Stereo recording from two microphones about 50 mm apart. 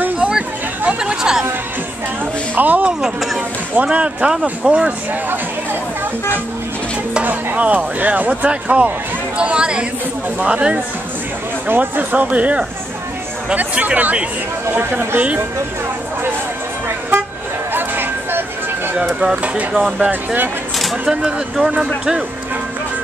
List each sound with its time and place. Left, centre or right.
0.9 s a sound: centre
2.5 s speech: right
7.2 s speech: right
11.6 s speech: right
14.7 s speech: right
17.7 s a sound: right
19.1 s speech: right